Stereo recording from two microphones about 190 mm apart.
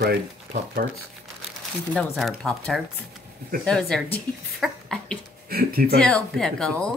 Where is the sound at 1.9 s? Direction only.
5° left (ahead or behind).